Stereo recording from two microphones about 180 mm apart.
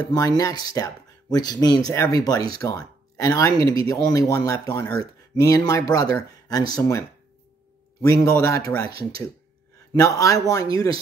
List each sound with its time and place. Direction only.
0.4 s speech: 20° left (ahead or behind)
9.9 s speech: 20° left (ahead or behind)